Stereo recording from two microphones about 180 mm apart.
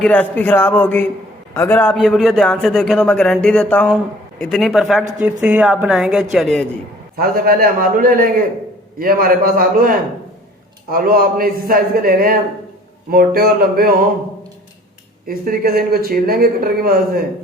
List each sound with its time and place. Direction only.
0.0 s a man's voice: 5° left (ahead or behind)
7.2 s a man's voice: 55° right (ahead or behind)
15.3 s speech: 55° right (ahead or behind)